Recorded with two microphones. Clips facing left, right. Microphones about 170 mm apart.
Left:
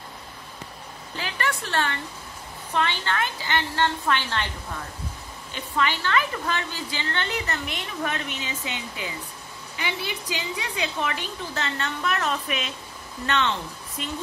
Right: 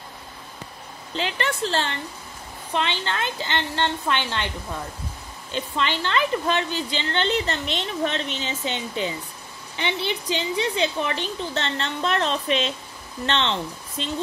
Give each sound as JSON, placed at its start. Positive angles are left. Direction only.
{"t": 1.1, "sound": "a woman's voice", "side_deg": -25}
{"t": 5.5, "sound": "a woman's voice", "side_deg": -25}